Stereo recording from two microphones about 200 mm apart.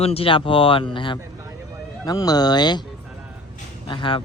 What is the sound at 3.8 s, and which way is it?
Speech, 25° left (ahead or behind).